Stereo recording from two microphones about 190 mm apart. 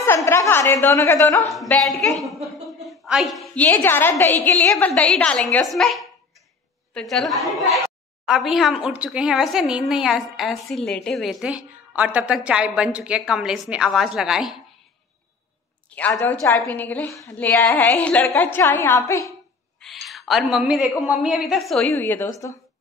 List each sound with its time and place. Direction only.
0.0 s a woman's voice: 15° left (ahead or behind)
1.5 s a woman's voice: centre (ahead or behind)
15.9 s a woman's voice: 5° left (ahead or behind)
19.8 s a woman's voice: centre (ahead or behind); by 22.6 s 15° left (ahead or behind)